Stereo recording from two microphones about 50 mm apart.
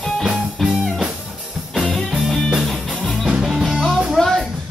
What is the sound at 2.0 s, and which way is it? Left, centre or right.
Music, centre.